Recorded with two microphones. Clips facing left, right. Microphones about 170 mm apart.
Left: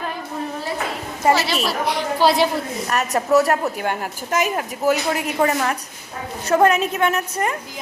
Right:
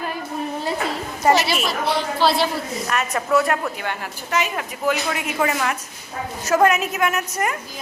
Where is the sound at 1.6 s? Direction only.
15° left (ahead or behind).